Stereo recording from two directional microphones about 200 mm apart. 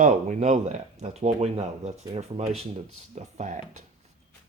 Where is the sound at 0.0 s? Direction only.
35° right (ahead or behind).